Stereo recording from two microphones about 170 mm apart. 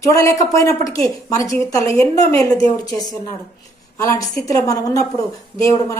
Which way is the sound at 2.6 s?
20° left (ahead or behind).